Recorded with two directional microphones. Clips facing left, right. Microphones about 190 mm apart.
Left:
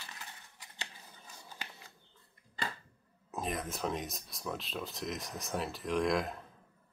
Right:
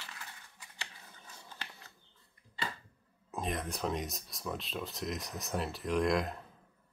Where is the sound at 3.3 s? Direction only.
Centre (ahead or behind).